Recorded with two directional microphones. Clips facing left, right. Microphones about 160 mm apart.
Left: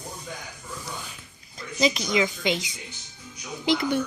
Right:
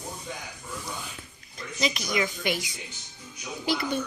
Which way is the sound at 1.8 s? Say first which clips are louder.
Left 5 dB; 30° left (ahead or behind).